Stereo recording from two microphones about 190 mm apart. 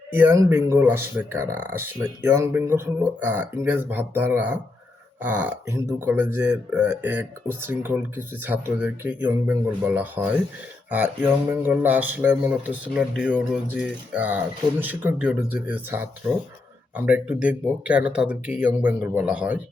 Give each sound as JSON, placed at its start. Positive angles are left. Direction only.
{"t": 0.1, "sound": "speech", "side_deg": -10}